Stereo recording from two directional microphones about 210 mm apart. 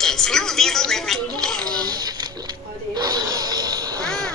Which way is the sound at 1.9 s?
20° right (ahead or behind).